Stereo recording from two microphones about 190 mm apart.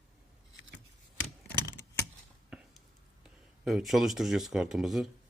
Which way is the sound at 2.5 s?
5° right (ahead or behind).